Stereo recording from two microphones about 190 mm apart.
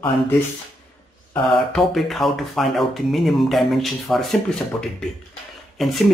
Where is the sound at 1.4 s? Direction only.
Centre (ahead or behind).